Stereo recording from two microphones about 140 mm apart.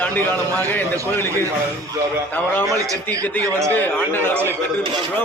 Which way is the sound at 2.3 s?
15° left (ahead or behind).